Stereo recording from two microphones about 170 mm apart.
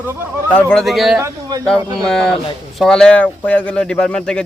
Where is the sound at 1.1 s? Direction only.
20° right (ahead or behind).